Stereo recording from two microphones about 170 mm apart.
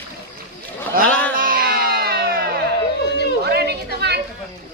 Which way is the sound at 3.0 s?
85° left.